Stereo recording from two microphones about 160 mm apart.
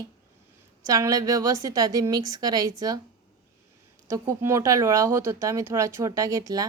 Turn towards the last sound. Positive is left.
turn(degrees=-20)  # may be behind; listen again after turning